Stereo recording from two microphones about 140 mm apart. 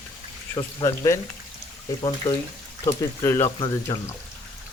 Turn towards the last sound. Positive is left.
turn(degrees=35)  # may be behind; listen again after turning